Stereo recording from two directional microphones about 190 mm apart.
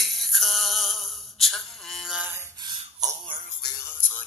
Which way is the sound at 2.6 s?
20° right (ahead or behind).